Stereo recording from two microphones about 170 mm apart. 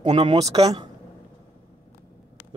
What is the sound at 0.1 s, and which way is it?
Speech, 25° right (ahead or behind).